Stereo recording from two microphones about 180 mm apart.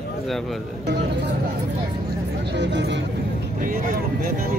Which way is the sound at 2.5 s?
75° right (ahead or behind).